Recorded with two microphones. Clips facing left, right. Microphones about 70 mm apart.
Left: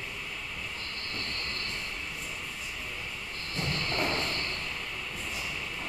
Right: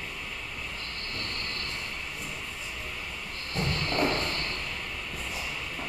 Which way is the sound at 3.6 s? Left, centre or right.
Right.